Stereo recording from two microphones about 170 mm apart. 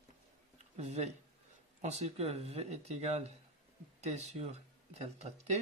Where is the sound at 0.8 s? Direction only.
40° right (ahead or behind).